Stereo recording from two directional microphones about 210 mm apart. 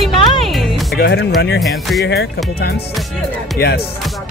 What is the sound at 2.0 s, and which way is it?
Speech, 50° left (ahead or behind).